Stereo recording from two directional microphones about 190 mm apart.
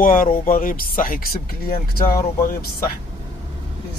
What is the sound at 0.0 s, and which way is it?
Speech, 45° left (ahead or behind).